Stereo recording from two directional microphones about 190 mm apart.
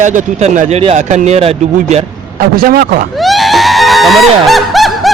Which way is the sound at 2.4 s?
50° right (ahead or behind).